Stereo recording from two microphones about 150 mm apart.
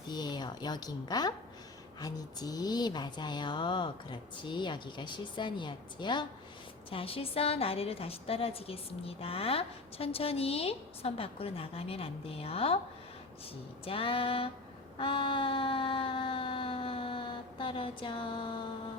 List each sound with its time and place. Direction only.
0.1 s a woman's voice: 30° left (ahead or behind)
13.8 s a woman's voice: 40° left (ahead or behind)
14.9 s a sound: 35° left (ahead or behind)